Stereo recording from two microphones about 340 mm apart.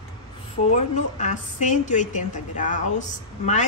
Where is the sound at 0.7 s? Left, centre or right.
Left.